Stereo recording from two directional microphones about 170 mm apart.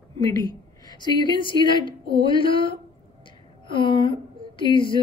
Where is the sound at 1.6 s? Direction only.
30° left (ahead or behind).